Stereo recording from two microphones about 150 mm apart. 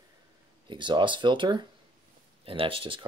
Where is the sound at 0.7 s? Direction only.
30° right (ahead or behind).